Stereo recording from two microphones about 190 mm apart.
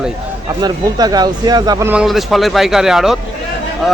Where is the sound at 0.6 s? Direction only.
20° right (ahead or behind).